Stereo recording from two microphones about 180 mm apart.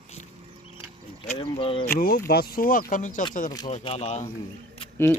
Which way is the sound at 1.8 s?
55° left (ahead or behind).